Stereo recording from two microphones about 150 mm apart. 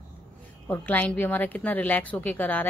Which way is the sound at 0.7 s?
10° left (ahead or behind).